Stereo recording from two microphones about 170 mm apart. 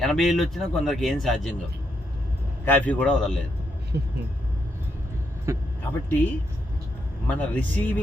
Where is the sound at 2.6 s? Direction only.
10° left (ahead or behind).